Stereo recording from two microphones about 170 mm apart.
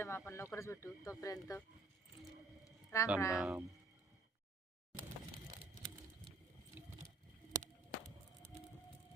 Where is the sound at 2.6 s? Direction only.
20° left (ahead or behind).